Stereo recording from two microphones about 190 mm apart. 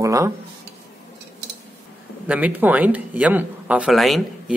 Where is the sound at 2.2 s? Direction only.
10° right (ahead or behind).